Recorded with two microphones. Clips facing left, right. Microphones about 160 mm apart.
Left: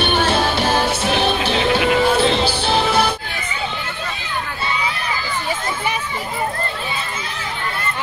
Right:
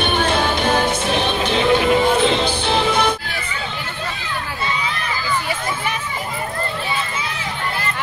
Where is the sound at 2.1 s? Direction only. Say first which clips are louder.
Even; 35° left (ahead or behind).